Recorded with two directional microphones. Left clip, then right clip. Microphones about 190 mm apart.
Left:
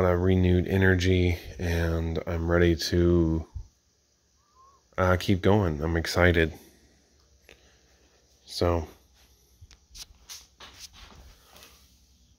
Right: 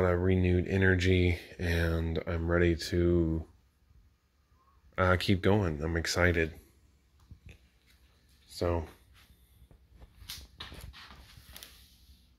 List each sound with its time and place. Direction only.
0.0 s speech: 10° left (ahead or behind)
4.9 s speech: 5° left (ahead or behind)
8.5 s speech: 20° left (ahead or behind)